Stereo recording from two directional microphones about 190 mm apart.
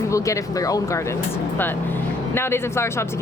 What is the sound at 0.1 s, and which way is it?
Speech, 15° left (ahead or behind).